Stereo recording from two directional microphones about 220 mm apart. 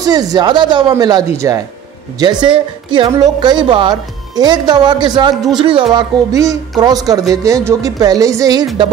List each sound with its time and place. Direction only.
0.0 s a woman's voice: 15° right (ahead or behind)